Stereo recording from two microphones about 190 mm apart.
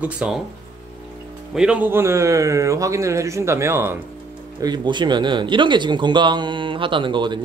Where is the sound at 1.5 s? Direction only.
5° right (ahead or behind).